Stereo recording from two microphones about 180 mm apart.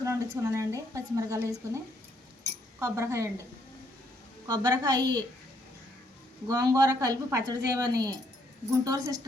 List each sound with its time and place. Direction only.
0.0 s speech: 15° right (ahead or behind)
4.4 s a woman's voice: 20° right (ahead or behind)
6.5 s a woman's voice: 20° right (ahead or behind)